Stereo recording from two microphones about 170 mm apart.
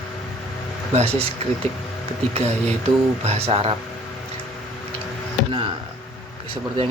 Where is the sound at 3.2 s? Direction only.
35° right (ahead or behind).